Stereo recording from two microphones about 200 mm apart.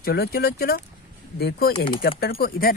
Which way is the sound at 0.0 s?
50° left (ahead or behind).